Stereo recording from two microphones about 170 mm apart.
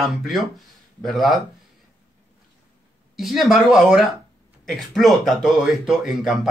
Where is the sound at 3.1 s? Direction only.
Centre (ahead or behind).